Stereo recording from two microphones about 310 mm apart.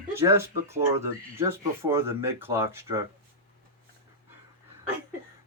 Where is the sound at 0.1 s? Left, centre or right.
Centre.